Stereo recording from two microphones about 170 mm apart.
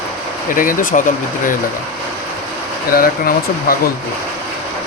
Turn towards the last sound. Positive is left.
turn(degrees=60)  # may be behind; listen again after turning